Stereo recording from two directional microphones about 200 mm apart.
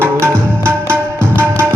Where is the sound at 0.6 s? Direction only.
10° right (ahead or behind).